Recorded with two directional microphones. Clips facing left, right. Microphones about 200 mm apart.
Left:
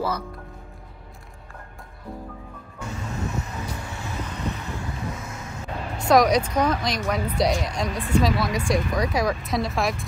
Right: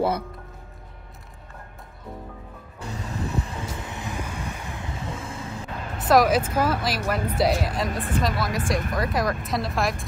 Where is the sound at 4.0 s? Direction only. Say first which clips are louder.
Left 3 dB; 15° right (ahead or behind).